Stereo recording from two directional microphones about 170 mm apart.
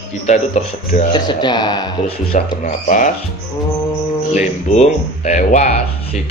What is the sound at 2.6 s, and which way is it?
Speech, 50° left (ahead or behind).